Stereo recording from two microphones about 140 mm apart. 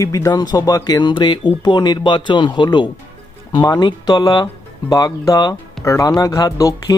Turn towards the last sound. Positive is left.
turn(degrees=25)  # may be behind; listen again after turning